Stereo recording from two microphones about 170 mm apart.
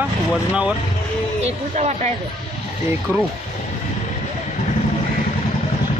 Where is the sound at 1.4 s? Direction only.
40° right (ahead or behind).